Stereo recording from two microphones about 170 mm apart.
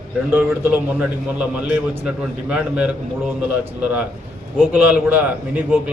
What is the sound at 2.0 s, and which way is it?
Speech, 5° right (ahead or behind).